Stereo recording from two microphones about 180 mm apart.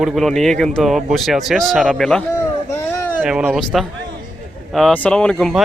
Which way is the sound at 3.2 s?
5° right (ahead or behind).